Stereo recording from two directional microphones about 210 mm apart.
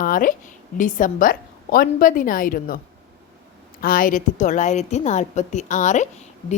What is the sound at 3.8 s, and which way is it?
A woman's voice, 40° left (ahead or behind).